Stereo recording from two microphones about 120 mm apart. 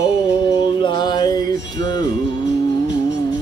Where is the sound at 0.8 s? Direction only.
40° left (ahead or behind).